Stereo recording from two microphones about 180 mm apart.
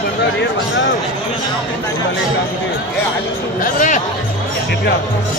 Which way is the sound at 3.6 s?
45° left (ahead or behind).